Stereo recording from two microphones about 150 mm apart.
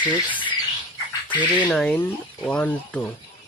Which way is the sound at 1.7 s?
5° left (ahead or behind).